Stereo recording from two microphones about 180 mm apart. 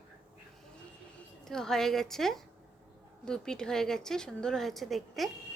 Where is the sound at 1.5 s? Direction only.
5° left (ahead or behind).